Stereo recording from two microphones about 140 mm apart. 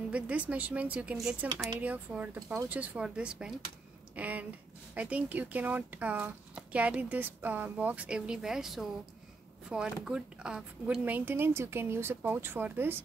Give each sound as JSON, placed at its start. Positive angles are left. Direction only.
{"t": 0.1, "sound": "speech", "side_deg": -10}
{"t": 2.4, "sound": "speech", "side_deg": -25}
{"t": 2.7, "sound": "speech", "side_deg": -10}